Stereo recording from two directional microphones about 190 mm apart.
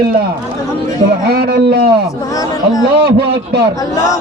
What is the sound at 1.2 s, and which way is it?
Speech, 55° right (ahead or behind).